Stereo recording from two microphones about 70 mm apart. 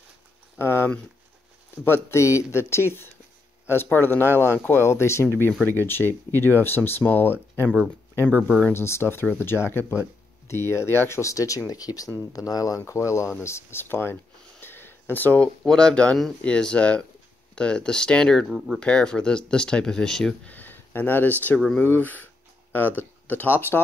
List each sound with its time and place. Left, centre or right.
0.6 s speech: left
1.9 s speech: left
8.7 s speech: left
14.6 s a sound: left
15.6 s speech: centre
20.4 s speech: left